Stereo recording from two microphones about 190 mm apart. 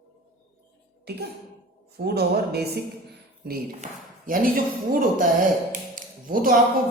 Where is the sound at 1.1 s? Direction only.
55° right (ahead or behind).